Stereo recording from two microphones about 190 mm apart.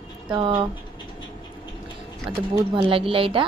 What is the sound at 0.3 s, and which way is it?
Speech, 25° right (ahead or behind).